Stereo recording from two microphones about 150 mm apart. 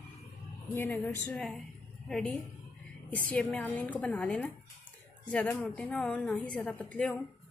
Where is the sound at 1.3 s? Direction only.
5° left (ahead or behind).